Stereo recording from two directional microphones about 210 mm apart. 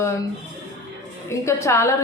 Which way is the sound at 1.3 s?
15° left (ahead or behind).